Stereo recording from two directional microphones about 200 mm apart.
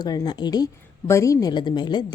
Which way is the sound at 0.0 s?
20° left (ahead or behind).